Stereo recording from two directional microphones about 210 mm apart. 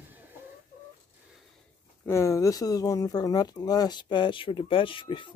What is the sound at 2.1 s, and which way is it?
Speech, 15° left (ahead or behind).